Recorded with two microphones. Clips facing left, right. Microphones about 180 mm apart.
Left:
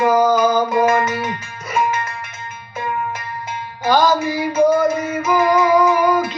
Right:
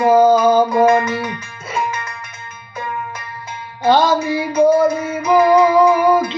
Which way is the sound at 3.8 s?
25° right (ahead or behind).